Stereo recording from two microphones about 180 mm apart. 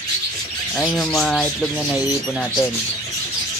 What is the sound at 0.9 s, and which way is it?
Bird, 5° left (ahead or behind).